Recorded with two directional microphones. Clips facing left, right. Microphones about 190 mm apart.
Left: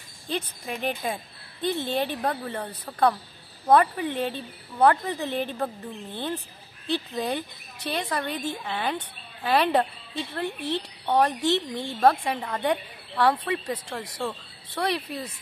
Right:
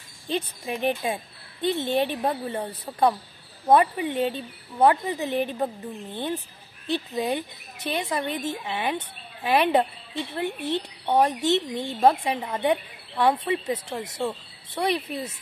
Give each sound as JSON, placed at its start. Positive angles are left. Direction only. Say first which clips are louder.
{"t": 0.3, "sound": "a woman's voice", "louder": "right 3 dB", "side_deg": -20}
{"t": 13.5, "sound": "a woman's voice", "louder": "right 3 dB", "side_deg": -25}